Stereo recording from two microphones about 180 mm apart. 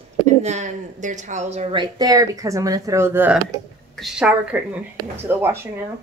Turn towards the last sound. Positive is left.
turn(degrees=-15)  # may be behind; listen again after turning